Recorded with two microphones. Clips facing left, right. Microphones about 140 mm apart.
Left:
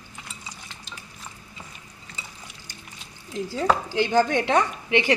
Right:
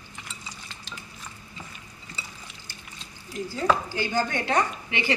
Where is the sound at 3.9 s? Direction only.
80° left.